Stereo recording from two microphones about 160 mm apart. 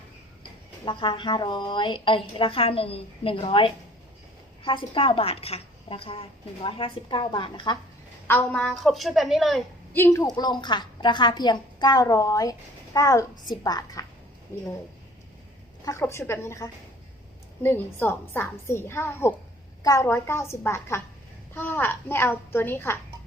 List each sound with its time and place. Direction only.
0.9 s a woman's voice: 35° left (ahead or behind)
8.3 s a woman's voice: 10° left (ahead or behind)
9.9 s a woman's voice: 15° left (ahead or behind)
15.8 s a woman's voice: 20° left (ahead or behind)